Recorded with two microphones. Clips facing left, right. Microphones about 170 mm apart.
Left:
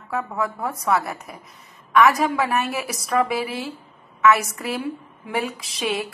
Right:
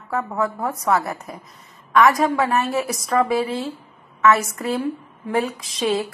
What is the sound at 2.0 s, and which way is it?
Speech, centre (ahead or behind).